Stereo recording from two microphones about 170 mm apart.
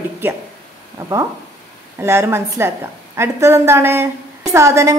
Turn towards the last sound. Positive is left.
turn(degrees=-15)  # may be behind; listen again after turning